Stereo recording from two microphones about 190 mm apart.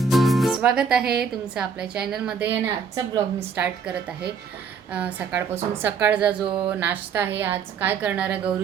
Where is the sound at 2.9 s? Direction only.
20° right (ahead or behind).